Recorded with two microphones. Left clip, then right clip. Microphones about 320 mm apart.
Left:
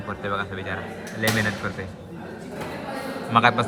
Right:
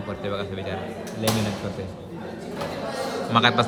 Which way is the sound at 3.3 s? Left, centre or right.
Centre.